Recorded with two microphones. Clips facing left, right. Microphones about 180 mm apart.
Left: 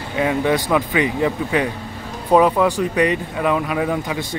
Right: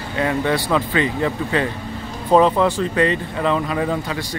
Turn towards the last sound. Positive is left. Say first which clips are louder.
# left 1 dB
turn(degrees=20)  # may be behind; listen again after turning